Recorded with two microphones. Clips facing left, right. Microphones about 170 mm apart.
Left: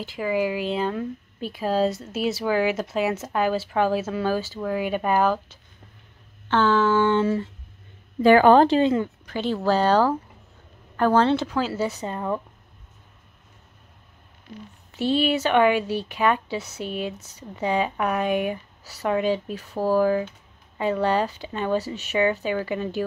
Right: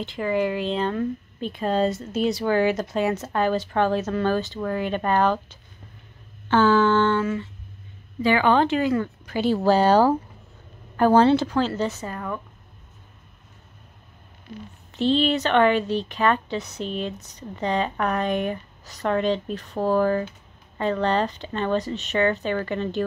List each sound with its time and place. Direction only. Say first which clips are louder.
0.0 s speech: right 1 dB; 5° left (ahead or behind)
7.2 s speech: left 3 dB; 30° left (ahead or behind)
8.2 s speech: left 5 dB; 45° left (ahead or behind); by 9.0 s 25° left (ahead or behind)
9.2 s speech: right 3 dB; 10° right (ahead or behind)
11.3 s speech: right 2 dB; centre (ahead or behind)
12.1 s speech: left 4 dB; 25° left (ahead or behind)
14.9 s speech: right 1 dB; 10° left (ahead or behind)